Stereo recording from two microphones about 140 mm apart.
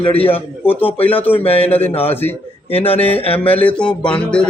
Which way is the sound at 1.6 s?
10° left (ahead or behind).